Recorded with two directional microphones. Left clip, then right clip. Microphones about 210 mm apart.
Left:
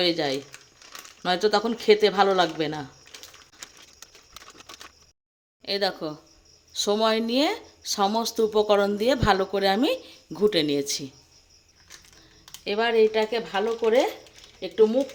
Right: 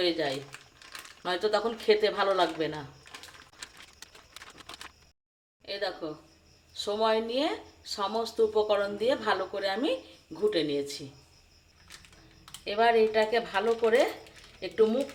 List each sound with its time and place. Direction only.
0.0 s speech: 45° left (ahead or behind)
5.6 s speech: 50° left (ahead or behind)
12.6 s speech: 40° left (ahead or behind)